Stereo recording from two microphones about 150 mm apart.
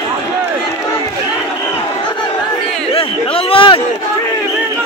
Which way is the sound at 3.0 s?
40° left (ahead or behind).